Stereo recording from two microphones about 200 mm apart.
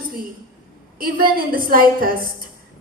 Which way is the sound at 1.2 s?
45° right (ahead or behind).